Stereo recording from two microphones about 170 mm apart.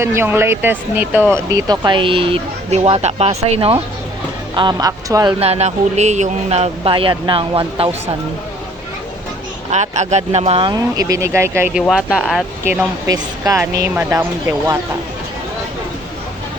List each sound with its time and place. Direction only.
0.0 s speech: 15° right (ahead or behind)
5.4 s speech: 40° right (ahead or behind)
9.6 s speech: 45° right (ahead or behind)
10.7 s speech: 20° right (ahead or behind)
11.7 s speech: centre (ahead or behind)
13.1 s speech: 20° right (ahead or behind)